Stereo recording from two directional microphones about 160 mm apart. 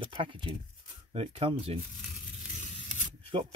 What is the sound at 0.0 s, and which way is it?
Speech, 30° right (ahead or behind).